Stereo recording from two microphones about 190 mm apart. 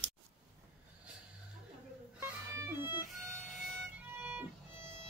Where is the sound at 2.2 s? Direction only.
10° right (ahead or behind).